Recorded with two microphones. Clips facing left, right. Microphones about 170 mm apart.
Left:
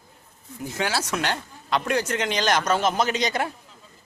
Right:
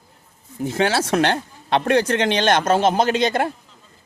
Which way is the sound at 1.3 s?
60° right (ahead or behind).